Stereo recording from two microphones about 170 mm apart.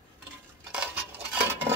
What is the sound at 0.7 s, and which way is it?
Cutlery, 5° right (ahead or behind).